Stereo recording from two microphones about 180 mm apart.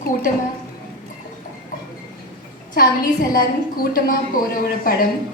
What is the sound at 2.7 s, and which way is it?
A woman's voice, 55° left (ahead or behind).